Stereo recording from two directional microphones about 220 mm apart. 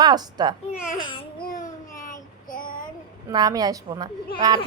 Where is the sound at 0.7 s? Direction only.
25° left (ahead or behind).